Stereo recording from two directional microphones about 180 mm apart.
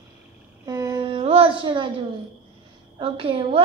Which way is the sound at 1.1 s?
30° right (ahead or behind).